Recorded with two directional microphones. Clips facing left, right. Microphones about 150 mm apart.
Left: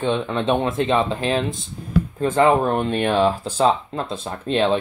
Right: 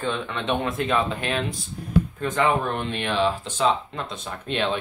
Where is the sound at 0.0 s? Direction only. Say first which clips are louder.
Left 6 dB; 20° left (ahead or behind).